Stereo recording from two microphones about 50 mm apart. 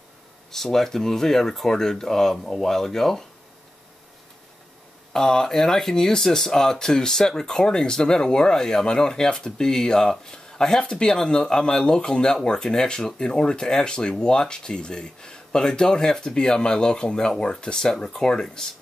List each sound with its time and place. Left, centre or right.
0.5 s speech: centre
5.1 s speech: centre